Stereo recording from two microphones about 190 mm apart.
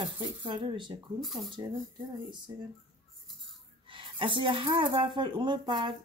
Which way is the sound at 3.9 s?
25° right (ahead or behind).